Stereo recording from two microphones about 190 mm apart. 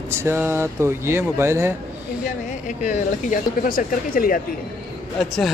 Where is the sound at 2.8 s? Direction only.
50° left (ahead or behind).